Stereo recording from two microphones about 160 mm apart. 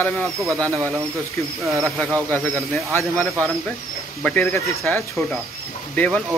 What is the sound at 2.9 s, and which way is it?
Speech, 10° left (ahead or behind).